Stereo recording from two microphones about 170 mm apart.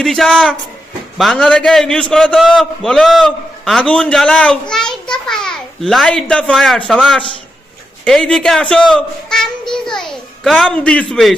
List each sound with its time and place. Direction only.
0.0 s a man's voice: 5° left (ahead or behind)